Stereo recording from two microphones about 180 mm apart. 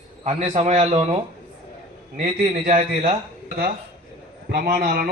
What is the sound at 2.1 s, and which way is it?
A man's voice, 35° right (ahead or behind).